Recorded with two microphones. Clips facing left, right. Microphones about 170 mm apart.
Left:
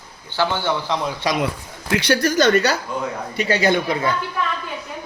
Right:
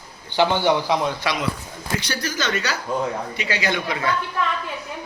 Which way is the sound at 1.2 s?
35° left (ahead or behind).